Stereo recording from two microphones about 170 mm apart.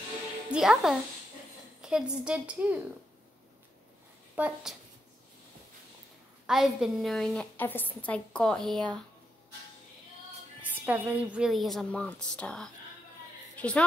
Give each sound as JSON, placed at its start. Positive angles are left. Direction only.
{"t": 0.5, "sound": "a woman's voice", "side_deg": -5}
{"t": 4.4, "sound": "speech", "side_deg": -5}
{"t": 6.4, "sound": "a woman's voice", "side_deg": 0}
{"t": 10.7, "sound": "a woman's voice", "side_deg": -10}